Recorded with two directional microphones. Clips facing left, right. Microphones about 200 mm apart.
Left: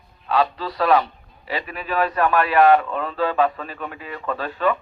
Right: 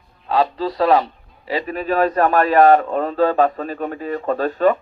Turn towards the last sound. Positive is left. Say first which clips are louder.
# right 6 dB
turn(degrees=-45)  # may be behind; listen again after turning